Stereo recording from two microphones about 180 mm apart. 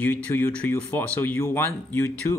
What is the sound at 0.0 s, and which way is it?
Speech, 10° left (ahead or behind).